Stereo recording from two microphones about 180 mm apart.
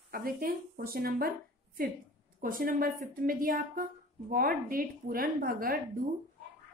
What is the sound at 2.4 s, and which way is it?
A woman's voice, 50° right (ahead or behind).